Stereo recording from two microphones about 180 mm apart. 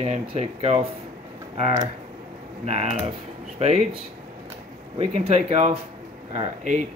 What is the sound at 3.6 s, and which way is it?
Speech, 40° right (ahead or behind).